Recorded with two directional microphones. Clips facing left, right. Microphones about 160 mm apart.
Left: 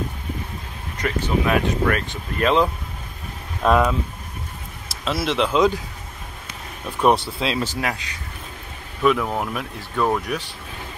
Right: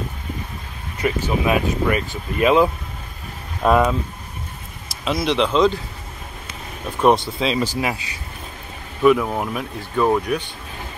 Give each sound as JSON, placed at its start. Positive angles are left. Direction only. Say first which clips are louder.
{"t": 0.9, "sound": "speech", "louder": "right 1 dB", "side_deg": -10}
{"t": 5.0, "sound": "speech", "louder": "right 2 dB", "side_deg": 0}
{"t": 7.3, "sound": "speech", "louder": "right 3 dB", "side_deg": 0}